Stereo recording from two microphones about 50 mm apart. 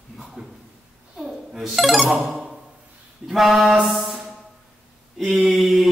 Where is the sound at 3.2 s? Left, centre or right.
Centre.